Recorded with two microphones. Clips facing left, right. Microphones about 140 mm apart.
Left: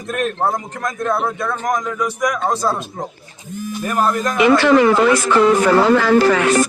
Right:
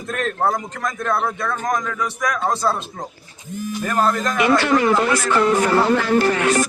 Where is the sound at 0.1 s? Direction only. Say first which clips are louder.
Left 2 dB; 20° left (ahead or behind).